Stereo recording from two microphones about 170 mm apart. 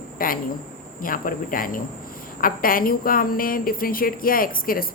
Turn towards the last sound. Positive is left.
turn(degrees=55)  # may be behind; listen again after turning